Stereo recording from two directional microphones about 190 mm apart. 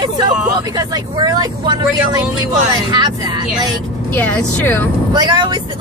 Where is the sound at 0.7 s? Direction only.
20° right (ahead or behind).